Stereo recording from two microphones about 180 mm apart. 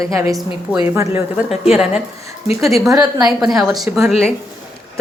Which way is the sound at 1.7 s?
5° right (ahead or behind).